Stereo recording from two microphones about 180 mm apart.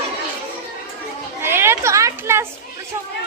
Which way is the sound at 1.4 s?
15° right (ahead or behind).